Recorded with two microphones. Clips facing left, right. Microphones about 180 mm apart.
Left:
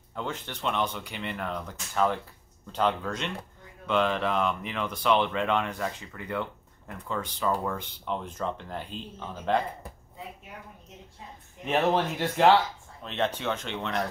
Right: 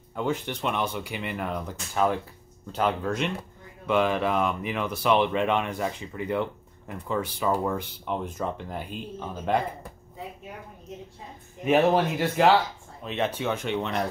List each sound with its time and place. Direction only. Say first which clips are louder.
0.1 s speech: right 7 dB; 10° right (ahead or behind)
11.6 s speech: right 4 dB; 5° right (ahead or behind)